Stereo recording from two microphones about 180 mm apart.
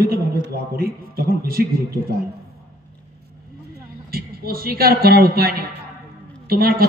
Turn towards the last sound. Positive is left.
turn(degrees=-55)  # may be behind; listen again after turning